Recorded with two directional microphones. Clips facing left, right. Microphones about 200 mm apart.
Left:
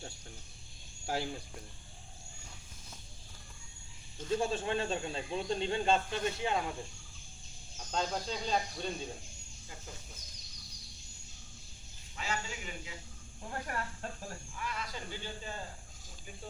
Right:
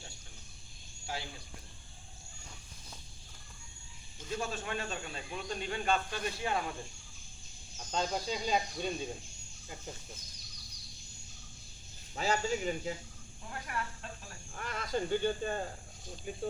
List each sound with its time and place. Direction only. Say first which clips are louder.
1.0 s speech: left 6 dB; 45° left (ahead or behind)
4.4 s speech: left 4 dB; 30° left (ahead or behind)
7.9 s speech: right 1 dB; 5° right (ahead or behind)
12.1 s speech: right 8 dB; 40° right (ahead or behind)
13.5 s speech: left 1 dB; 40° left (ahead or behind)
14.5 s speech: right 7 dB; 50° right (ahead or behind)